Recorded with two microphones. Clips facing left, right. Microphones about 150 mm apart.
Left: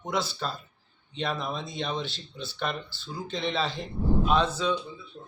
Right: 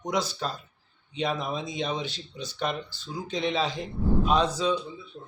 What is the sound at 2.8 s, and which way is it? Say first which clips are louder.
Speech: right 1 dB; 45° right (ahead or behind).